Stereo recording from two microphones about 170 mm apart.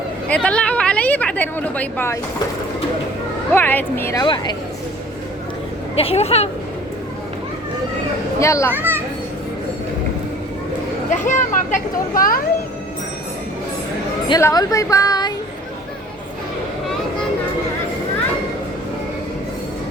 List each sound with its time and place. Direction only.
0.3 s speech: 5° left (ahead or behind)
3.5 s a woman's voice: 10° left (ahead or behind)
4.2 s a woman's voice: 25° left (ahead or behind)
6.0 s speech: 35° left (ahead or behind)
8.4 s a woman's voice: 15° left (ahead or behind)
8.7 s children playing: 10° right (ahead or behind)
11.1 s speech: 50° left (ahead or behind)
14.3 s a woman's voice: 20° left (ahead or behind)